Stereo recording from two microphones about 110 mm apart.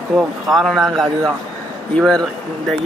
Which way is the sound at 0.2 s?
Centre (ahead or behind).